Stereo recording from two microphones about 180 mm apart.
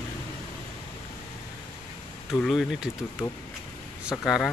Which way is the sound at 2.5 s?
Centre (ahead or behind).